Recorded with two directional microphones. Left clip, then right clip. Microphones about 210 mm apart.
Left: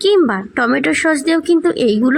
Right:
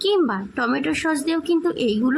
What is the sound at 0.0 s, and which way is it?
A woman's voice, 20° left (ahead or behind).